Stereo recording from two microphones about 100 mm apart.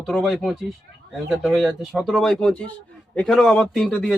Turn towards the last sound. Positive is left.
turn(degrees=5)  # may be behind; listen again after turning